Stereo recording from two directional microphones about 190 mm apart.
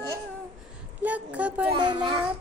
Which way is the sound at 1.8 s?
25° right (ahead or behind).